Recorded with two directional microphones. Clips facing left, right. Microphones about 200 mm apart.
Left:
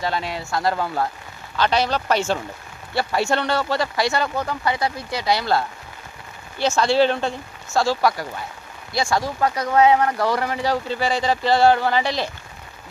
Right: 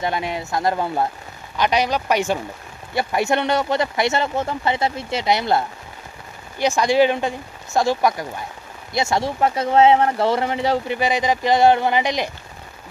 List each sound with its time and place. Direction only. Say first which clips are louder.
0.0 s speech: right 2 dB; 20° right (ahead or behind)